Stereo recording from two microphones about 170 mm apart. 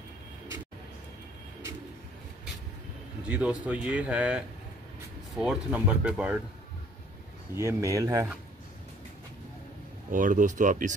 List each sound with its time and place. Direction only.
3.3 s speech: 10° right (ahead or behind)
7.5 s speech: 15° right (ahead or behind)
10.1 s speech: 50° right (ahead or behind)